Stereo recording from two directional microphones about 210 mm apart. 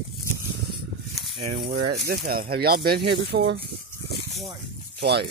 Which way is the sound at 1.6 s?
45° right (ahead or behind).